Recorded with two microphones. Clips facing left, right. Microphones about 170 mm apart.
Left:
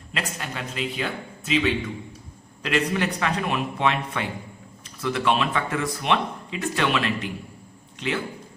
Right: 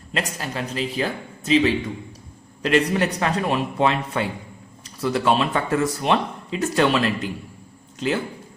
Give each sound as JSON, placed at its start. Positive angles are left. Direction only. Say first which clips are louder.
{"t": 0.1, "sound": "speech", "louder": "right 4 dB", "side_deg": -35}